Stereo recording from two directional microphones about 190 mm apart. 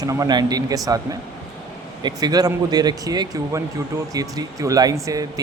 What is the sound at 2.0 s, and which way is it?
Speech, 20° right (ahead or behind).